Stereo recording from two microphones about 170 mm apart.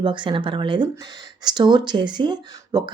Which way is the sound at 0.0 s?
30° right (ahead or behind).